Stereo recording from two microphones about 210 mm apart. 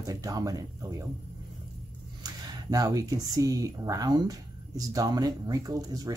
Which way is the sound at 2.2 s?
15° right (ahead or behind).